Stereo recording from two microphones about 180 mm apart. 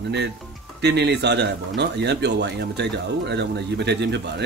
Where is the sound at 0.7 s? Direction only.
70° right (ahead or behind).